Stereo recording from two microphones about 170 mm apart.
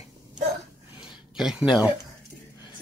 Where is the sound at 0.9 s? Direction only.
30° left (ahead or behind).